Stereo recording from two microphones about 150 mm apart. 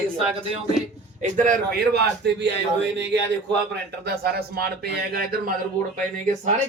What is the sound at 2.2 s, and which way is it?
Speech, 90° right.